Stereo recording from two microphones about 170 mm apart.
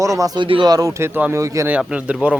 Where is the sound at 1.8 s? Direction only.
5° right (ahead or behind).